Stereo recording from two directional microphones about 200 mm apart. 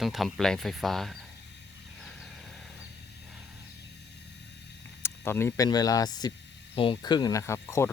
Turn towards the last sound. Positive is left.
turn(degrees=15)  # may be behind; listen again after turning